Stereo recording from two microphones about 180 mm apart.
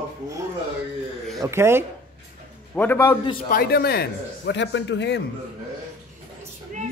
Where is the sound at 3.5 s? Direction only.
60° left (ahead or behind); by 5.2 s 75° left (ahead or behind).